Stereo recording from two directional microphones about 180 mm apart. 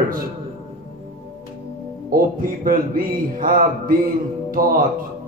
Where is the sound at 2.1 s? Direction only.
50° right (ahead or behind).